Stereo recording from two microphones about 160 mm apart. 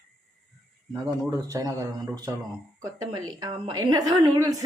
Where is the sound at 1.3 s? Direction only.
20° right (ahead or behind).